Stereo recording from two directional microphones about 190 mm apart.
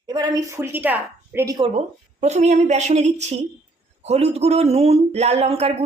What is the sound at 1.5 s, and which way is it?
Speech, 25° right (ahead or behind).